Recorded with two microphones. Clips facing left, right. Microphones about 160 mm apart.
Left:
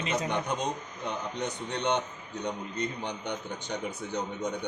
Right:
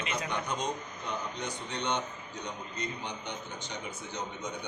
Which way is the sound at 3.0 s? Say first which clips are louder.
Left 5 dB; 60° left (ahead or behind).